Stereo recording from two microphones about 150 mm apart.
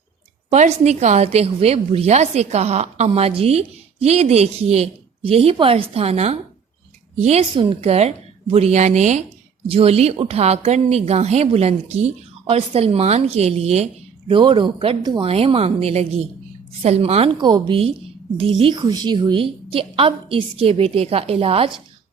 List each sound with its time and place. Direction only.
0.5 s a woman's voice: 50° right (ahead or behind)
7.5 s a woman's voice: 30° right (ahead or behind)
7.9 s a woman's voice: 45° right (ahead or behind)
9.6 s a woman's voice: 40° right (ahead or behind)
15.3 s a woman's voice: 40° right (ahead or behind)